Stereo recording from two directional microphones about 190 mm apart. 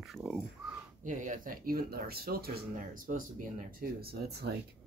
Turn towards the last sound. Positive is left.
turn(degrees=-55)  # may be behind; listen again after turning